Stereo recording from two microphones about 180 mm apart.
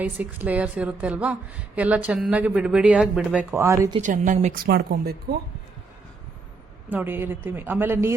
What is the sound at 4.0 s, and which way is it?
Speech, 40° right (ahead or behind).